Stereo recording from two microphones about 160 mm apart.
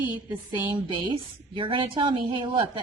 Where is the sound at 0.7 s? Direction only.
30° right (ahead or behind).